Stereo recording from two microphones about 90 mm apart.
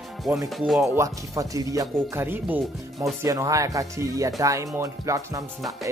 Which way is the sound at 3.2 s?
35° right (ahead or behind).